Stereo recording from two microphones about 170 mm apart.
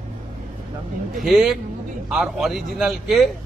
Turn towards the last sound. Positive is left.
turn(degrees=0)  # may be behind; listen again after turning